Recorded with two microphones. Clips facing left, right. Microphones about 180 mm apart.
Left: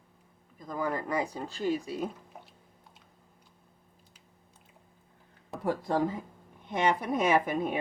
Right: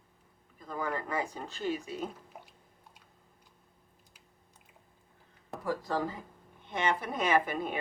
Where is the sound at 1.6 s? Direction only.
35° left (ahead or behind).